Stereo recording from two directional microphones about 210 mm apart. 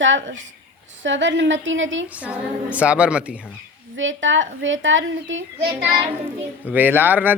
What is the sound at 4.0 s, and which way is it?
A child's voice, 65° right (ahead or behind).